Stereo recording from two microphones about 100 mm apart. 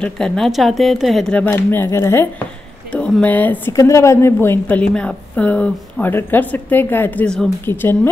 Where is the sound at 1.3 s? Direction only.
20° left (ahead or behind).